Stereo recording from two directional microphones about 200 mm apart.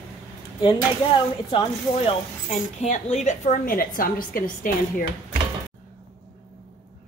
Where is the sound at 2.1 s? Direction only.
35° left (ahead or behind).